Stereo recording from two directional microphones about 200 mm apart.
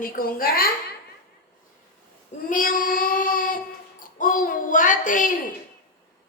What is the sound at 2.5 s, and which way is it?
Child singing, 40° left (ahead or behind).